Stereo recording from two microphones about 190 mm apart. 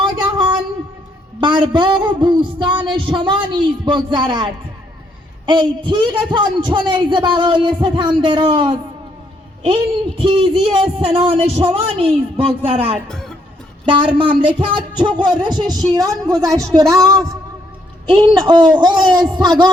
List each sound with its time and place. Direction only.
0.0 s a sound: 25° right (ahead or behind)
1.4 s a man's voice: 25° right (ahead or behind)
13.1 s speech: 5° left (ahead or behind)
13.8 s a man's voice: 25° right (ahead or behind)
18.3 s a man's voice: 20° right (ahead or behind)